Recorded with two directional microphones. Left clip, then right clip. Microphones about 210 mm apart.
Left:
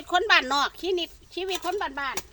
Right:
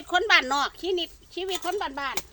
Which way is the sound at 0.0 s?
15° left (ahead or behind).